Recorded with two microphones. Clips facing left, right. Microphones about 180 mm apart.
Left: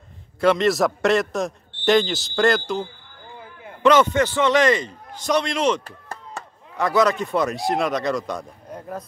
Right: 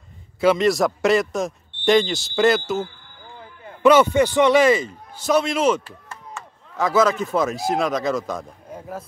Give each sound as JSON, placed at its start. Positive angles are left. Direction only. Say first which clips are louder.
{"t": 0.4, "sound": "a man's voice", "louder": "right 1 dB", "side_deg": 0}
{"t": 5.9, "sound": "chop", "louder": "left 2 dB", "side_deg": 40}
{"t": 6.8, "sound": "speech", "louder": "right 1 dB", "side_deg": 0}